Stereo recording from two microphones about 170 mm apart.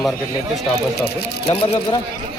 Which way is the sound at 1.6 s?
30° left (ahead or behind).